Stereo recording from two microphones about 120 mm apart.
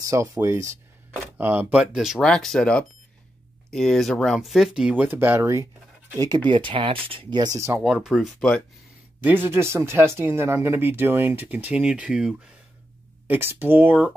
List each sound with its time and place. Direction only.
0.0 s speech: 25° right (ahead or behind)
6.1 s speech: 35° right (ahead or behind)
7.8 s speech: 5° right (ahead or behind)
9.2 s speech: 15° right (ahead or behind)